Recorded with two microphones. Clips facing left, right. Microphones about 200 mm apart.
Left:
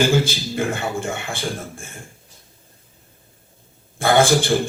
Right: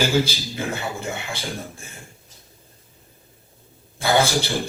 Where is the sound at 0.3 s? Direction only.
50° left (ahead or behind).